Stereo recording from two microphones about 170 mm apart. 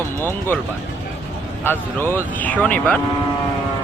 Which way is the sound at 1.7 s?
15° left (ahead or behind).